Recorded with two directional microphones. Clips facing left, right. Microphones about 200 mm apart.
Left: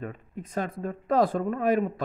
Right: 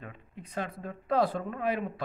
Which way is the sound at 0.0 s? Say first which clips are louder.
Left 8 dB; 45° left (ahead or behind).